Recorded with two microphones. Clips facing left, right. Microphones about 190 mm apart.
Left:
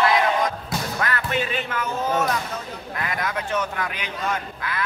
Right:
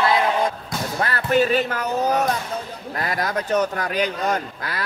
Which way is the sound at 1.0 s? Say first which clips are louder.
Right 8 dB; 35° right (ahead or behind).